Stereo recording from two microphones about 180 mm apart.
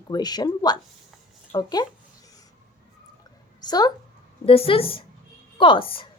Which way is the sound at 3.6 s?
20° left (ahead or behind).